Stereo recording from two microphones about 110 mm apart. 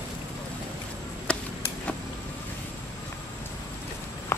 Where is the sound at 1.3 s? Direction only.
10° left (ahead or behind).